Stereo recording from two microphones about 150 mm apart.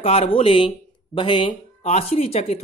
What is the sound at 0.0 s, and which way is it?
Speech, 40° left (ahead or behind).